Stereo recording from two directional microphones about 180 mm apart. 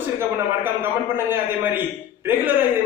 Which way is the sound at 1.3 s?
10° right (ahead or behind).